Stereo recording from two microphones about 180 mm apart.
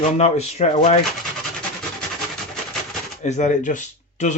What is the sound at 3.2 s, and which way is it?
Speech, 40° left (ahead or behind).